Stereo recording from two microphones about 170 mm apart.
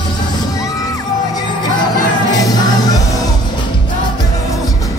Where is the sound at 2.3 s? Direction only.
20° left (ahead or behind).